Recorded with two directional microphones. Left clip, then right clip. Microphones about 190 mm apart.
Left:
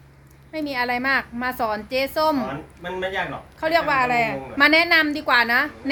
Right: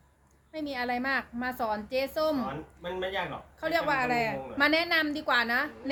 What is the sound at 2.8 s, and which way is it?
Speech, 55° right (ahead or behind).